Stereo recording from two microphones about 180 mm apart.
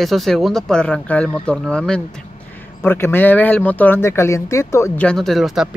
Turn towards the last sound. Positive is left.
turn(degrees=0)  # may be behind; listen again after turning